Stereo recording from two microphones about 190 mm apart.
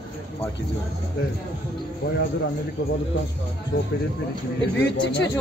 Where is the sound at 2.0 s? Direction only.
55° left (ahead or behind).